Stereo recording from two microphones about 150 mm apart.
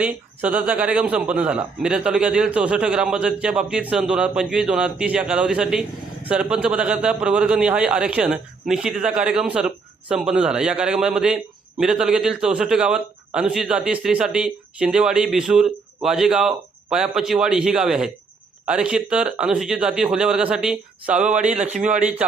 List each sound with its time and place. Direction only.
0.0 s a man's voice: 10° right (ahead or behind)
21.5 s a man's voice: 50° right (ahead or behind)